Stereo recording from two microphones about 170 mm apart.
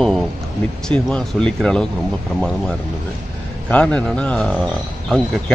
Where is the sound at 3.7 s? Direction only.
5° left (ahead or behind).